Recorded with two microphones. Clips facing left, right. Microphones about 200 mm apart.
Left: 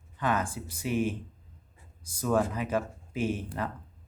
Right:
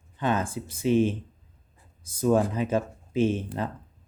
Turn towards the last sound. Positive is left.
turn(degrees=-25)  # may be behind; listen again after turning